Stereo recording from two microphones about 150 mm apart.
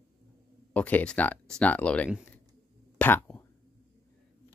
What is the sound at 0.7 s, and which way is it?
Speech, 10° left (ahead or behind).